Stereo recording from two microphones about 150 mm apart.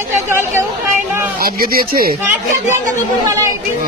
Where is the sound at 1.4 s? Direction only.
75° right (ahead or behind).